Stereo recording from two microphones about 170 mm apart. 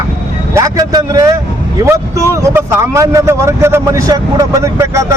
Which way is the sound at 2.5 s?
15° right (ahead or behind).